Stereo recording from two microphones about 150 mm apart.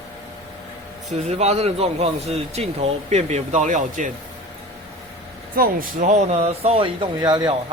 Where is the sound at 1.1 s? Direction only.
45° right (ahead or behind).